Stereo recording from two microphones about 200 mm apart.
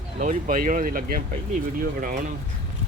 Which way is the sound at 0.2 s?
40° right (ahead or behind).